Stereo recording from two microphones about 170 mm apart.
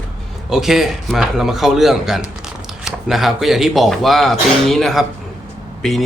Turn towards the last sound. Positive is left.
turn(degrees=0)  # may be behind; listen again after turning